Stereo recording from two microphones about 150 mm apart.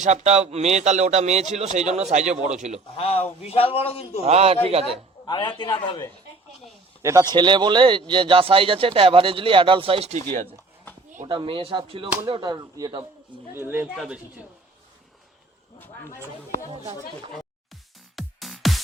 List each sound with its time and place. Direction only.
0.0 s speech: 50° right (ahead or behind)
3.0 s a man's voice: 40° left (ahead or behind)
4.2 s speech: 45° right (ahead or behind)
5.2 s a man's voice: 30° left (ahead or behind)
7.0 s speech: 20° right (ahead or behind)
7.3 s speech: 30° right (ahead or behind); by 10.2 s 45° right (ahead or behind)
11.3 s speech: 35° right (ahead or behind)
13.5 s speech: 15° right (ahead or behind)
13.9 s speech: 5° right (ahead or behind)
18.2 s music: centre (ahead or behind)